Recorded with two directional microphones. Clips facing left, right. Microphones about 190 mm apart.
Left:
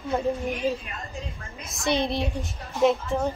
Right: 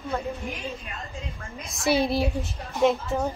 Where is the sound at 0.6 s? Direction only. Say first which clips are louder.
Left 12 dB; 35° left (ahead or behind).